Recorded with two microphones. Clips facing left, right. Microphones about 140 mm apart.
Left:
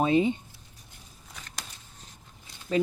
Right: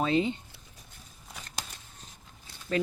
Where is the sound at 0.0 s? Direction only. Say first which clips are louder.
Left 4 dB; 20° left (ahead or behind).